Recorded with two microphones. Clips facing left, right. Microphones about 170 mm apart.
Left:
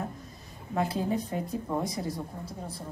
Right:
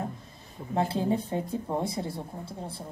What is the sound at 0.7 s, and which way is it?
Speech, 30° right (ahead or behind).